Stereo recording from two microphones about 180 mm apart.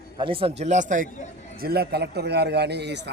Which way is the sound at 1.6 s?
60° right (ahead or behind).